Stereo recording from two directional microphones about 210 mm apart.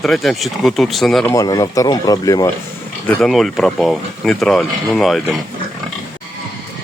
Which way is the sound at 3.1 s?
Centre (ahead or behind).